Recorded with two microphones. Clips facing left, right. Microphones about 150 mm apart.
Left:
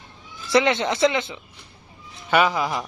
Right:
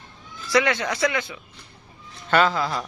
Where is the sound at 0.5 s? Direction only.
25° left (ahead or behind).